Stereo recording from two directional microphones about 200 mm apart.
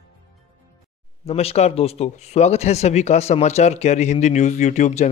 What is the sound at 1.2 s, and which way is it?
Speech, 30° left (ahead or behind).